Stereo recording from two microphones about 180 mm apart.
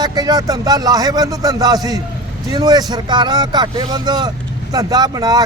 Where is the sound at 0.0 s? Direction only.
20° right (ahead or behind).